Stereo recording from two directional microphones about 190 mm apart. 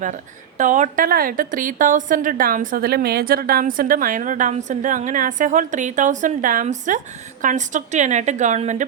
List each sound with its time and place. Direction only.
0.0 s a woman's voice: 40° right (ahead or behind)